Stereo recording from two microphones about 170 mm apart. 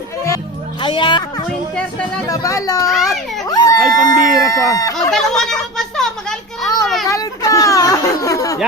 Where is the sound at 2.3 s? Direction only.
20° left (ahead or behind).